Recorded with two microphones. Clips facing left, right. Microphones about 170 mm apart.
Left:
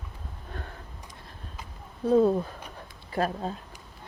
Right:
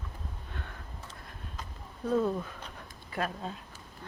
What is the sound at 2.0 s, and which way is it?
Speech, 35° left (ahead or behind).